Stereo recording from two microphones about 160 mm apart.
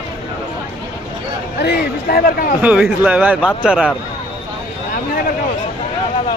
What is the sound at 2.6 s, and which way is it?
Speech, 5° right (ahead or behind).